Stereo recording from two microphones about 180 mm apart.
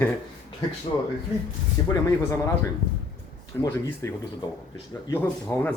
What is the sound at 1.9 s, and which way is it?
Speech, 15° left (ahead or behind).